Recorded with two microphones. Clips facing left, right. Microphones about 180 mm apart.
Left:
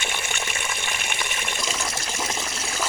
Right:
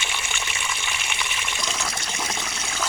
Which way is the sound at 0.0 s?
50° left (ahead or behind).